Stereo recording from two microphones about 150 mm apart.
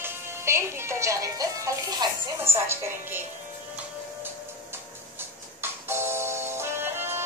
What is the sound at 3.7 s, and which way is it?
Music, 15° right (ahead or behind).